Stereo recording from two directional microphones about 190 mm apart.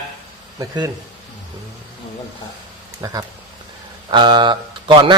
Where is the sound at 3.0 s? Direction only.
20° right (ahead or behind).